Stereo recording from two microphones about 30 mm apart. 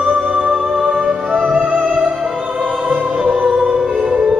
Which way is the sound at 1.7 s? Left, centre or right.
Right.